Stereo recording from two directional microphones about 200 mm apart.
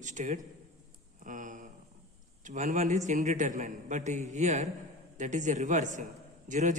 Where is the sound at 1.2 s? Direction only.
40° right (ahead or behind).